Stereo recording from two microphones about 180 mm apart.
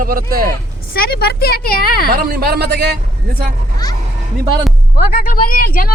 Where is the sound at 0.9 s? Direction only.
60° left (ahead or behind).